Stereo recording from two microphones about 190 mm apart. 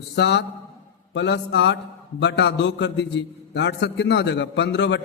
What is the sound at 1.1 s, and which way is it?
A man's voice, 70° left (ahead or behind).